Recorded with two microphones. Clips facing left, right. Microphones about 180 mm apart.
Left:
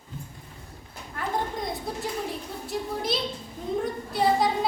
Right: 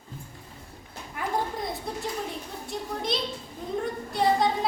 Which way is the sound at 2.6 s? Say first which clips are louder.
Left 2 dB; 5° left (ahead or behind).